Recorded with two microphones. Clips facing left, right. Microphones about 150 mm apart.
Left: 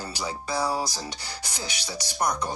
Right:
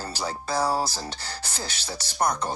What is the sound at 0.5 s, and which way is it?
Speech, 40° right (ahead or behind).